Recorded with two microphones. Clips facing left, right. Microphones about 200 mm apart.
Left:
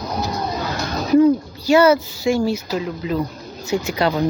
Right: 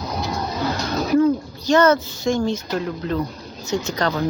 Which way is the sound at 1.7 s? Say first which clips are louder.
Left 2 dB; 10° left (ahead or behind).